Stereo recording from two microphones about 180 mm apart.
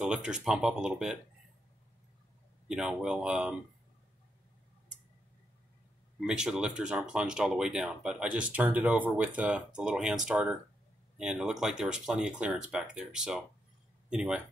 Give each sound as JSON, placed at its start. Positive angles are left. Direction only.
{"t": 0.0, "sound": "speech", "side_deg": -5}
{"t": 2.7, "sound": "speech", "side_deg": -5}
{"t": 6.2, "sound": "speech", "side_deg": -5}